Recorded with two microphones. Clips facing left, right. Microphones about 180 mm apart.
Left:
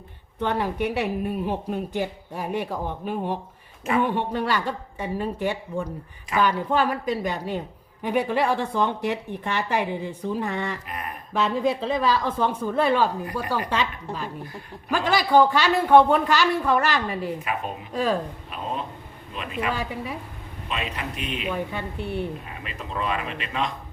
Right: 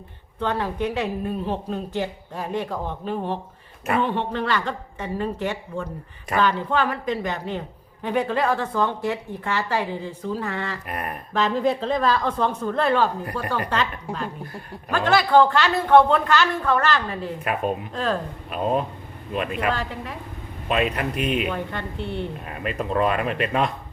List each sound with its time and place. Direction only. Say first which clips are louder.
0.3 s speech: even; 15° left (ahead or behind)
10.8 s speech: right 4 dB; 55° right (ahead or behind)
11.3 s a woman's voice: right 1 dB; 5° left (ahead or behind)
18.5 s speech: right 8 dB; 50° right (ahead or behind)
19.7 s speech: even; 10° left (ahead or behind)
20.7 s speech: right 8 dB; 55° right (ahead or behind)
21.5 s speech: even; 10° left (ahead or behind)
22.4 s speech: right 9 dB; 55° right (ahead or behind)